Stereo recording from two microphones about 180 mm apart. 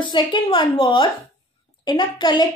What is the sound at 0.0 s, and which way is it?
A woman's voice, 25° left (ahead or behind).